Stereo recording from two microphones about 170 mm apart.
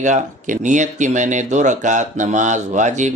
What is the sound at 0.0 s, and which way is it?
Speech, 45° right (ahead or behind).